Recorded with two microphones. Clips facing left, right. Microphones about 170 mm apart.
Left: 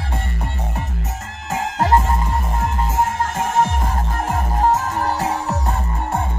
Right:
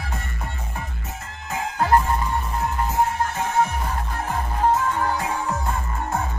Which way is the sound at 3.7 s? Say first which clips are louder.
Left 4 dB; 45° left (ahead or behind).